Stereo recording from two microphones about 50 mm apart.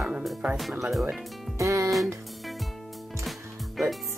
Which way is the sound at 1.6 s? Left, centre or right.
Right.